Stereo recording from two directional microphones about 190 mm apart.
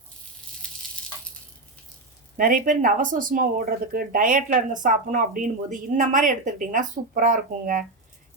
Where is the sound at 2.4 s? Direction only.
45° right (ahead or behind).